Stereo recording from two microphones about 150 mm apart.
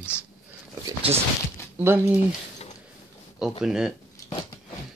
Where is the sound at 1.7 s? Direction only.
15° right (ahead or behind).